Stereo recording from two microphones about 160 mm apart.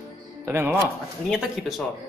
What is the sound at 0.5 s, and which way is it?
Speech, 15° right (ahead or behind).